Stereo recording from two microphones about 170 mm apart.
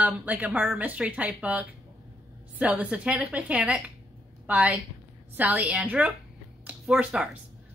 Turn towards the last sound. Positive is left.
turn(degrees=-5)  # may be behind; listen again after turning